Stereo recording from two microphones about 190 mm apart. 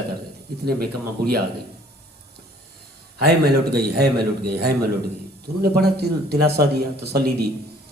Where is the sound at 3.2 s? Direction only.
55° right (ahead or behind).